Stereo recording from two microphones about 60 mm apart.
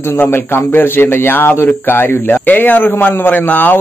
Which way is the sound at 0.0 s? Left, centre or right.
Left.